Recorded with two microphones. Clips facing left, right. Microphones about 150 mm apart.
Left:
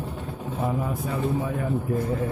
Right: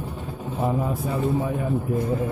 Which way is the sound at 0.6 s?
20° right (ahead or behind).